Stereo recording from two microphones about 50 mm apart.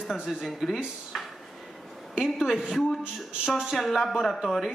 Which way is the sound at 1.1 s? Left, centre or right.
Centre.